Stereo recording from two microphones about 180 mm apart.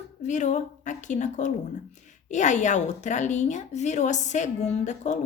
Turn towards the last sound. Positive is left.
turn(degrees=40)  # may be behind; listen again after turning